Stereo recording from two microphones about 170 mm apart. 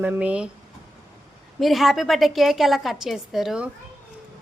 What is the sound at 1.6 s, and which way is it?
A woman's voice, centre (ahead or behind).